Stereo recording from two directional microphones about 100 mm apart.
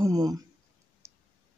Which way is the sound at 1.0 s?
30° right (ahead or behind).